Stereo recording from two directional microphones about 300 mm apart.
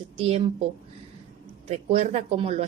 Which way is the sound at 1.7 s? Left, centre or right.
Right.